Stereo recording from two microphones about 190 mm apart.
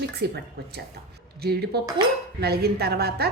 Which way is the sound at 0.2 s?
60° right (ahead or behind).